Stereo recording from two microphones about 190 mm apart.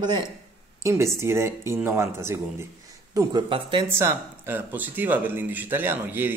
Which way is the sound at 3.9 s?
15° right (ahead or behind).